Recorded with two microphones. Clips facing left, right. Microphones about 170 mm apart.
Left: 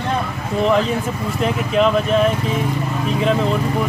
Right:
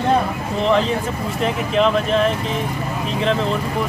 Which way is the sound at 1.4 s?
5° left (ahead or behind).